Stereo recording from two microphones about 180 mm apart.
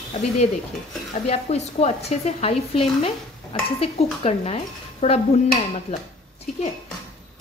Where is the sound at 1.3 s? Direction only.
35° left (ahead or behind).